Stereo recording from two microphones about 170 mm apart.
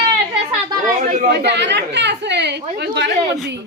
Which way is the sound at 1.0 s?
45° right (ahead or behind).